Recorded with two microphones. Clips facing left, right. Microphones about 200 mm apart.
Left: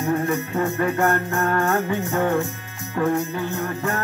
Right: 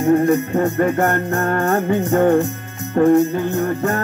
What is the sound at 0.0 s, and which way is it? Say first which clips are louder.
Music: right 8 dB; 40° right (ahead or behind).